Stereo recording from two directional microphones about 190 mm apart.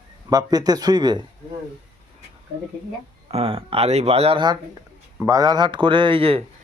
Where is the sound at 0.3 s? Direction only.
20° right (ahead or behind).